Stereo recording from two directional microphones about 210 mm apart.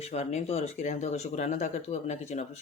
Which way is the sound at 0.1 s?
30° left (ahead or behind).